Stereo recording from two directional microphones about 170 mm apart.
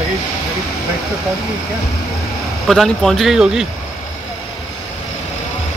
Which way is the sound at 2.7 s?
Centre (ahead or behind).